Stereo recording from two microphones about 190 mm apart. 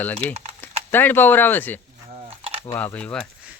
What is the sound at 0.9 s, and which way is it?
Speech, 10° left (ahead or behind).